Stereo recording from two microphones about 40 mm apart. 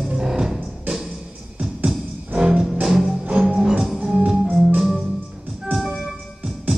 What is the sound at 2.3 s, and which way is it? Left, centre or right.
Music, right.